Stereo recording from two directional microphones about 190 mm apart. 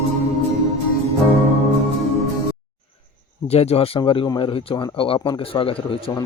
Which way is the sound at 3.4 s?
35° left (ahead or behind).